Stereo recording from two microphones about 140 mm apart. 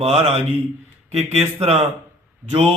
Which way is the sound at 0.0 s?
50° right (ahead or behind).